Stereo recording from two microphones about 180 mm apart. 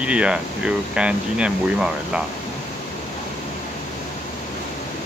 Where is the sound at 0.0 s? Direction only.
5° right (ahead or behind).